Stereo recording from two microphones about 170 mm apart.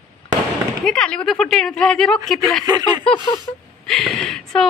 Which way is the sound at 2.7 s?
25° right (ahead or behind).